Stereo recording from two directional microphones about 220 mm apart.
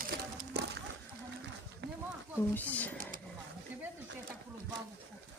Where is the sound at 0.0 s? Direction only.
40° right (ahead or behind).